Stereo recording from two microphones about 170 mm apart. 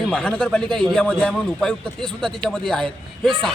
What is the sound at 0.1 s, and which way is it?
A man's voice, 5° left (ahead or behind).